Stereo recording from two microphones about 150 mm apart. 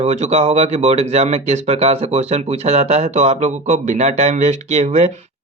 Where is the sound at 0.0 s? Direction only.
45° right (ahead or behind).